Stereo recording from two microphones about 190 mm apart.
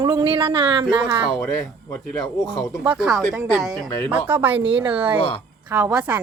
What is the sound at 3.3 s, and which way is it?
Speech, centre (ahead or behind).